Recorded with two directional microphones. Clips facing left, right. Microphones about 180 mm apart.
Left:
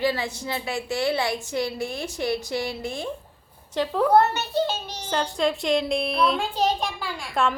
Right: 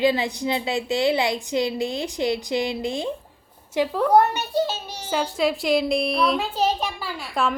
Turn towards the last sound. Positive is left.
turn(degrees=0)  # may be behind; listen again after turning